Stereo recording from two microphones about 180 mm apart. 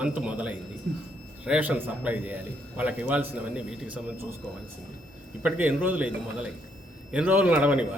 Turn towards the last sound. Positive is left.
turn(degrees=-5)  # may be behind; listen again after turning